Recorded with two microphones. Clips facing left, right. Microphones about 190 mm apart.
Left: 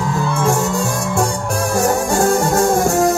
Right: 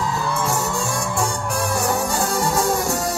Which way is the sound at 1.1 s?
45° left (ahead or behind).